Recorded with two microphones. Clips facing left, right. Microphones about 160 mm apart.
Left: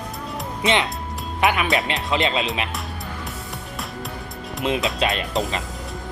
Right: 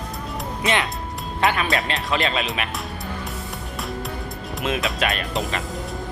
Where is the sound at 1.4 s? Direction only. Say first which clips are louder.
Left 1 dB; 20° left (ahead or behind).